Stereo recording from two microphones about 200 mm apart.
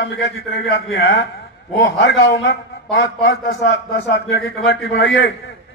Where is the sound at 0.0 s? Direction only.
70° left (ahead or behind); by 5.3 s 55° left (ahead or behind).